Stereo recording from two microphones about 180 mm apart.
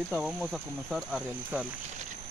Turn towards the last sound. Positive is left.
turn(degrees=-5)  # may be behind; listen again after turning